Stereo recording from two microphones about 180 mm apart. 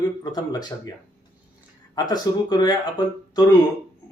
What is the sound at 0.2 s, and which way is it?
Speech, 20° left (ahead or behind).